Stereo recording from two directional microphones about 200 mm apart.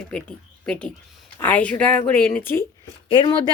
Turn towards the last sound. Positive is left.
turn(degrees=25)  # may be behind; listen again after turning